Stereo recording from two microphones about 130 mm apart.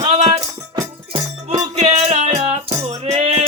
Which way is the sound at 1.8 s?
55° right (ahead or behind).